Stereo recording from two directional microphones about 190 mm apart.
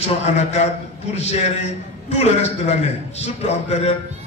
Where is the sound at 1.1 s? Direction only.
35° left (ahead or behind).